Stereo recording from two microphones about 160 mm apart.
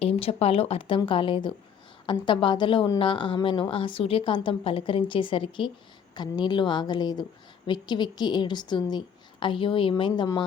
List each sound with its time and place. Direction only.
0.0 s a woman's voice: 40° left (ahead or behind)